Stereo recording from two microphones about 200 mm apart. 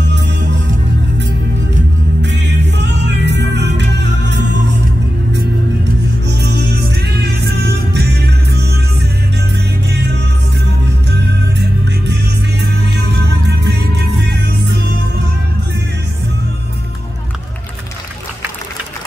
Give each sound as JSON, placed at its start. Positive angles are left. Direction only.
{"t": 2.2, "sound": "music", "side_deg": -60}
{"t": 6.2, "sound": "music", "side_deg": -60}
{"t": 9.8, "sound": "music", "side_deg": -55}
{"t": 13.5, "sound": "music", "side_deg": -55}